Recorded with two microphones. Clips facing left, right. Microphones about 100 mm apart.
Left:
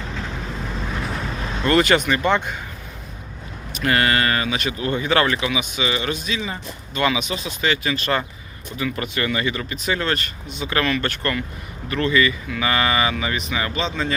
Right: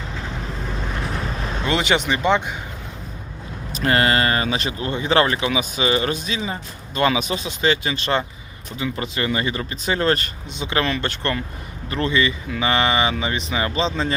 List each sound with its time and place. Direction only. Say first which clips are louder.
1.6 s speech: left 4 dB; 15° right (ahead or behind)
3.8 s speech: right 1 dB; 30° right (ahead or behind)